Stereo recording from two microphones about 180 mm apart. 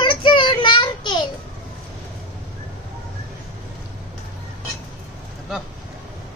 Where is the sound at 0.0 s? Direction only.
25° left (ahead or behind).